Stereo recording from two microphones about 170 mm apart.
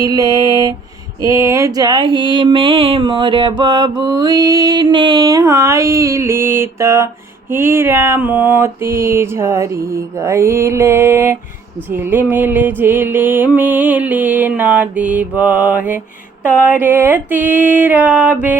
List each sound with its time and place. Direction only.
0.0 s mantra: 20° right (ahead or behind)
1.2 s a sound: 15° right (ahead or behind)
7.5 s music: 15° right (ahead or behind)